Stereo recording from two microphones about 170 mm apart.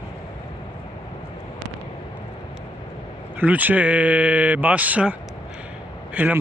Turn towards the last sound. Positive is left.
turn(degrees=-10)  # may be behind; listen again after turning